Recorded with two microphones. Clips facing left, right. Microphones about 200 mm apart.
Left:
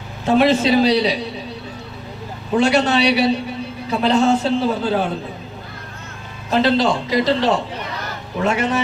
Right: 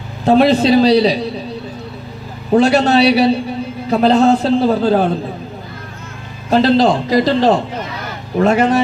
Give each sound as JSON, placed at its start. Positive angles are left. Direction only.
{"t": 0.3, "sound": "a man's voice", "side_deg": -35}
{"t": 2.5, "sound": "a man's voice", "side_deg": -35}
{"t": 6.5, "sound": "a man's voice", "side_deg": -40}